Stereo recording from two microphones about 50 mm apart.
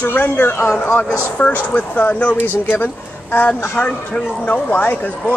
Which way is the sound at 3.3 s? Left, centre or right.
Left.